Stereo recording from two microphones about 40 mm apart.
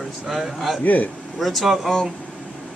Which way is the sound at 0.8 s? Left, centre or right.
Left.